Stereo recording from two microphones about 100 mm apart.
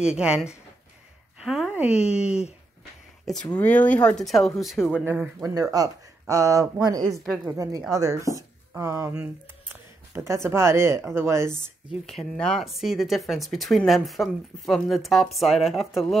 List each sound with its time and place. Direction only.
0.0 s speech: 10° right (ahead or behind)
1.4 s a sound: 5° right (ahead or behind)
1.8 s speech: 10° right (ahead or behind)
3.4 s speech: 15° left (ahead or behind); by 4.9 s centre (ahead or behind)
5.0 s speech: 20° right (ahead or behind)
5.4 s speech: 35° right (ahead or behind)
10.1 s speech: 30° right (ahead or behind)
12.1 s speech: 5° left (ahead or behind)